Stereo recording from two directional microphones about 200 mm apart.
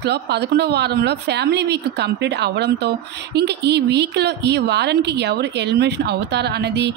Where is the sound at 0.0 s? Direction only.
55° right (ahead or behind).